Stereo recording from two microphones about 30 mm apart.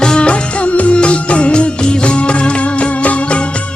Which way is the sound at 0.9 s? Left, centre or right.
Left.